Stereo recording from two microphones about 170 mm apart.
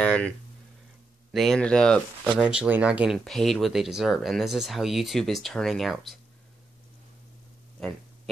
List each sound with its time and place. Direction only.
0.0 s a sound: 5° left (ahead or behind)
1.3 s speech: centre (ahead or behind)
2.4 s speech: 5° right (ahead or behind)